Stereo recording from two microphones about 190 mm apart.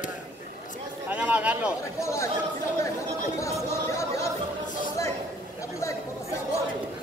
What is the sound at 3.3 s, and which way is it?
Chatter, 15° left (ahead or behind).